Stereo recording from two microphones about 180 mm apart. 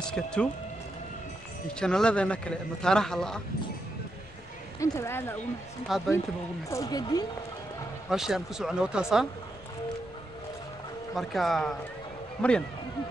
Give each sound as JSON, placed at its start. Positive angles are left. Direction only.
{"t": 0.1, "sound": "a man's voice", "side_deg": 5}
{"t": 1.7, "sound": "a man's voice", "side_deg": 5}
{"t": 4.7, "sound": "speech", "side_deg": 15}
{"t": 5.9, "sound": "a man's voice", "side_deg": 0}
{"t": 6.7, "sound": "speech", "side_deg": 20}
{"t": 8.1, "sound": "a man's voice", "side_deg": -5}
{"t": 11.1, "sound": "a man's voice", "side_deg": 0}